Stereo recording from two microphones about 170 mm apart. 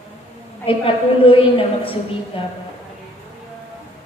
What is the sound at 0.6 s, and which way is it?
A woman's voice, 30° left (ahead or behind).